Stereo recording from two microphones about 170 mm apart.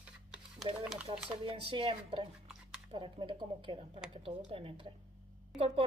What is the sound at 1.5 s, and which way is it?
Speech, 35° right (ahead or behind).